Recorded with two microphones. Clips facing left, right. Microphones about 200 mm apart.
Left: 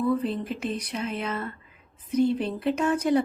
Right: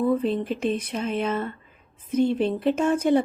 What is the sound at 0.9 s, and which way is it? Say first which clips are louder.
Speech: right 4 dB; 25° right (ahead or behind).